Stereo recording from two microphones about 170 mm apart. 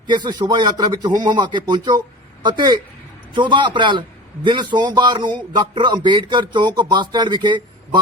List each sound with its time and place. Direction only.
0.1 s speech: 25° right (ahead or behind)